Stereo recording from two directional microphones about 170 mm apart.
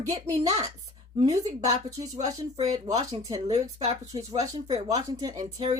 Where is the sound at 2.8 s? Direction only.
20° right (ahead or behind).